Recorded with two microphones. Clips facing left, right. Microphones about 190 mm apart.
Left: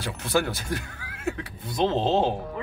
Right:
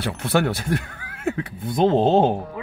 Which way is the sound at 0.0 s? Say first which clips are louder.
Right 4 dB; 60° right (ahead or behind).